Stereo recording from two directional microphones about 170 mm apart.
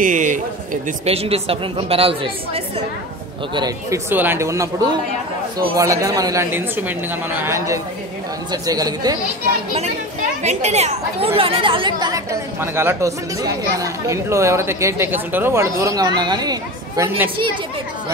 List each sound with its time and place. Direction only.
0.0 s a man's voice: 50° right (ahead or behind)
1.0 s a woman's voice: 35° right (ahead or behind)
4.1 s speech: 10° right (ahead or behind)
10.4 s speech: 40° right (ahead or behind); by 17.3 s 20° right (ahead or behind)